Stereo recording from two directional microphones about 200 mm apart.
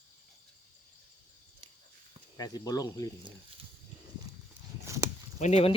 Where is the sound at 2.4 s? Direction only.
20° left (ahead or behind).